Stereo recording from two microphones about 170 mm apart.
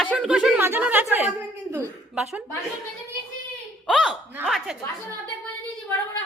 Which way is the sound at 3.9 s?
5° left (ahead or behind).